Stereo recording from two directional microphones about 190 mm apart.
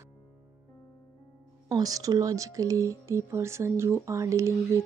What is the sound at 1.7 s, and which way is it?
Speech, 20° right (ahead or behind).